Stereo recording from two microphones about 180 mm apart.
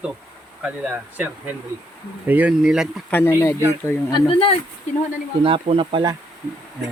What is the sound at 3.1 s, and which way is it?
Speech, 10° left (ahead or behind).